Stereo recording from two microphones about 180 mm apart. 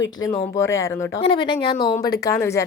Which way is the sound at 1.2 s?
30° left (ahead or behind).